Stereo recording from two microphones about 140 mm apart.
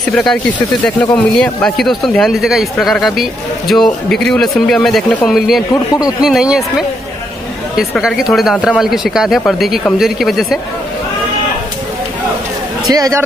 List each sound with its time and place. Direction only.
0.1 s speech: 5° left (ahead or behind)
7.7 s speech: 5° right (ahead or behind)
12.9 s speech: 25° right (ahead or behind)